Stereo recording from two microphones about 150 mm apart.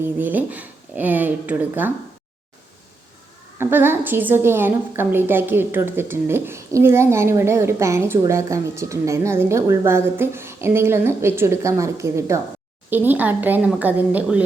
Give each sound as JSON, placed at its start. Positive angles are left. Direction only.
{"t": 0.0, "sound": "a woman's voice", "side_deg": -10}
{"t": 3.6, "sound": "a woman's voice", "side_deg": -15}